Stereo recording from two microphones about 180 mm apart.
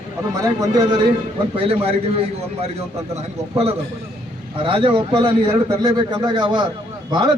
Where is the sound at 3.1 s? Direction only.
35° right (ahead or behind).